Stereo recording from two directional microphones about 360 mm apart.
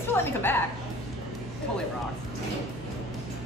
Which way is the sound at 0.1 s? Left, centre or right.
Centre.